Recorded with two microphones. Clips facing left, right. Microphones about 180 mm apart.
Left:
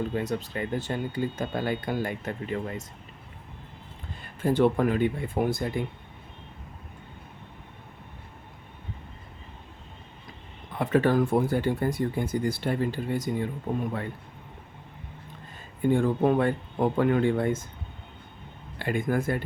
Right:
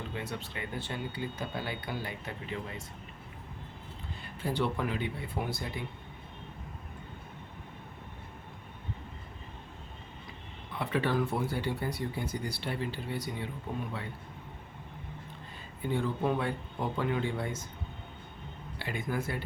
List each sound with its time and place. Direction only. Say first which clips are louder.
0.1 s speech: left 9 dB; 40° left (ahead or behind)
4.2 s speech: left 10 dB; 50° left (ahead or behind)
10.8 s speech: left 8 dB; 45° left (ahead or behind)
15.8 s speech: left 8 dB; 50° left (ahead or behind)
18.8 s speech: left 8 dB; 50° left (ahead or behind)